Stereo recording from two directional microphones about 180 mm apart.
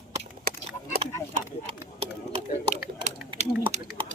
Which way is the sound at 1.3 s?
35° right (ahead or behind).